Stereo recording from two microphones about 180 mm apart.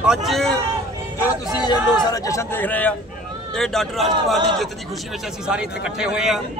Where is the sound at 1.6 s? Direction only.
25° left (ahead or behind); by 4.1 s centre (ahead or behind).